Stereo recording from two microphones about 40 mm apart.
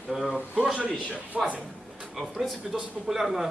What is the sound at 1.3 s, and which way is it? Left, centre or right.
Speech, right.